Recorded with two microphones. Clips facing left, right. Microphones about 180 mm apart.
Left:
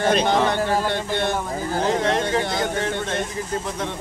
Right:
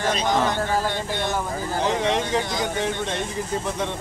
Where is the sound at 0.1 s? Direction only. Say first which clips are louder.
Left 2 dB; 65° left (ahead or behind).